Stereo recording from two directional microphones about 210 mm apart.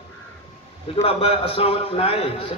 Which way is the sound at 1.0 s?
25° left (ahead or behind).